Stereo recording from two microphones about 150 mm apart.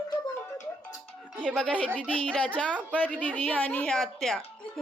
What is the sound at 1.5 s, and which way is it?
Speech, 5° left (ahead or behind).